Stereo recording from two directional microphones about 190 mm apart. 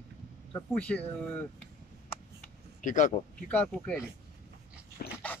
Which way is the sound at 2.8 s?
45° left (ahead or behind).